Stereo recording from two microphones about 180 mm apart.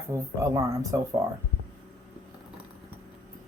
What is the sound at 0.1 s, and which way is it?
Speech, 15° right (ahead or behind).